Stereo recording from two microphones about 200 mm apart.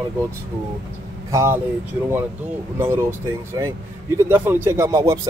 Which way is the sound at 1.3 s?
15° right (ahead or behind).